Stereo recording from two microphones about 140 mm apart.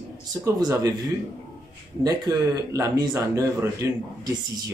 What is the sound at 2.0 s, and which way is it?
A man's voice, 25° right (ahead or behind).